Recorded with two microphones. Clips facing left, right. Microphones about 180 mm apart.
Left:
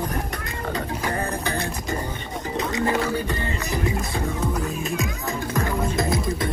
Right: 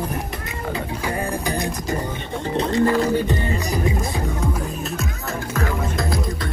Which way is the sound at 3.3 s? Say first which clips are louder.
Right 4 dB; 15° right (ahead or behind).